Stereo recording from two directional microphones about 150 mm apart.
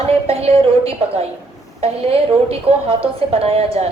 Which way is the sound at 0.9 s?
40° right (ahead or behind).